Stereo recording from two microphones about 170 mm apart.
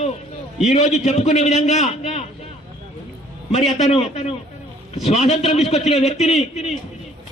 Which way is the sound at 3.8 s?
40° left (ahead or behind).